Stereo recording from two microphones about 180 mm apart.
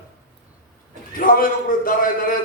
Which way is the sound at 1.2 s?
50° left (ahead or behind).